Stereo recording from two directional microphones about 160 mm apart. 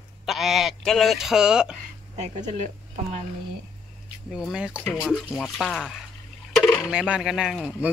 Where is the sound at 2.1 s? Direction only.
45° right (ahead or behind).